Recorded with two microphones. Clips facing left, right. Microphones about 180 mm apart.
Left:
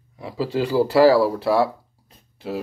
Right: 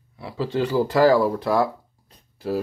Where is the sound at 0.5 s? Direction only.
10° left (ahead or behind).